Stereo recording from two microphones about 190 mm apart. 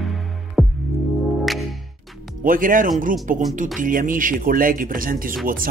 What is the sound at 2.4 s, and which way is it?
Speech, 45° right (ahead or behind).